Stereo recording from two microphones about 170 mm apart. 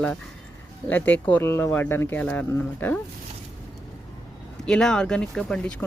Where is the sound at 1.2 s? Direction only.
10° left (ahead or behind).